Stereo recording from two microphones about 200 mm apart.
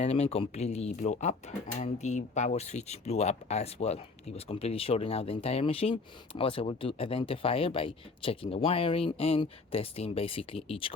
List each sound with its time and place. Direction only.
0.0 s speech: 30° left (ahead or behind)